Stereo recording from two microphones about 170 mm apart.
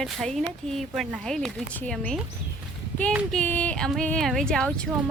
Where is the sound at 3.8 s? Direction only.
5° left (ahead or behind).